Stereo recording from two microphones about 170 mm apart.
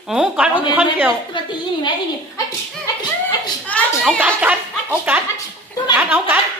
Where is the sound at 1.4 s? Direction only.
30° left (ahead or behind).